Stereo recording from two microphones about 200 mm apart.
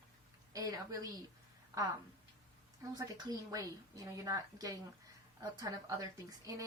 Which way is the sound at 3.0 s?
15° right (ahead or behind).